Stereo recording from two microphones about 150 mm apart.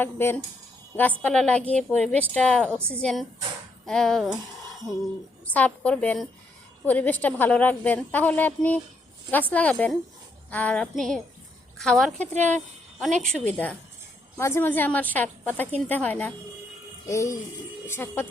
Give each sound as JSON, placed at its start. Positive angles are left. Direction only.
{"t": 0.0, "sound": "a woman's voice", "side_deg": 15}
{"t": 5.5, "sound": "a woman's voice", "side_deg": 10}
{"t": 17.1, "sound": "music", "side_deg": 20}
{"t": 17.8, "sound": "a woman's voice", "side_deg": 15}